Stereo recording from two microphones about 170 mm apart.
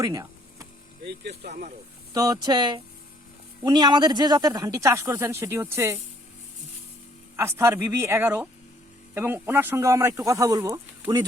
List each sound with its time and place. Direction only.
0.0 s a sound: 20° right (ahead or behind)
1.0 s speech: 75° right (ahead or behind)
2.1 s speech: 20° right (ahead or behind)
7.3 s speech: 15° right (ahead or behind)